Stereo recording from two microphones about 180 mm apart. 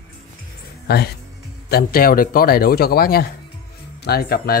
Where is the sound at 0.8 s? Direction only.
65° left (ahead or behind).